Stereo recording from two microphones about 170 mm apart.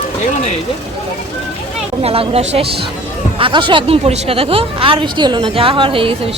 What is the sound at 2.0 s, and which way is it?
Speech, 35° right (ahead or behind).